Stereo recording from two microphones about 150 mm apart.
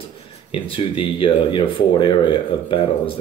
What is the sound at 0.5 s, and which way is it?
Speech, 35° left (ahead or behind).